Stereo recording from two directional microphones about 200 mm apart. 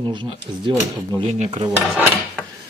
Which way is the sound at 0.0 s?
25° right (ahead or behind).